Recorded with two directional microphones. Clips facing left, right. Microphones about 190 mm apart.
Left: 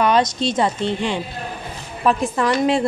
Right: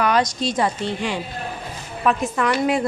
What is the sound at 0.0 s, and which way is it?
A woman's voice, 25° left (ahead or behind).